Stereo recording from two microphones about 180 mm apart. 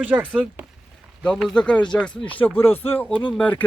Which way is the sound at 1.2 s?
5° left (ahead or behind).